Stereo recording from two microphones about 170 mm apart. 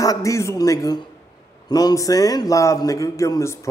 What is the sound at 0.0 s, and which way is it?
A man's voice, 20° left (ahead or behind).